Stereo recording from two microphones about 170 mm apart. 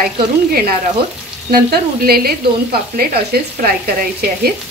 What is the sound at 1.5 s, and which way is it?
Frying, 65° right (ahead or behind).